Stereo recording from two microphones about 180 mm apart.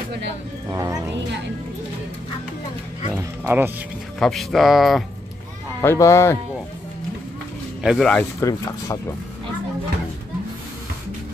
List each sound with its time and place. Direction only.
0.7 s speech: 20° right (ahead or behind)
3.1 s music: 10° right (ahead or behind)
4.2 s speech: centre (ahead or behind)
5.8 s speech: 15° left (ahead or behind)
7.8 s speech: centre (ahead or behind)
8.4 s speech: 20° left (ahead or behind)